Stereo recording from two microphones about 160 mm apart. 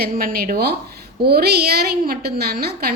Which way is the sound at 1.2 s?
80° right.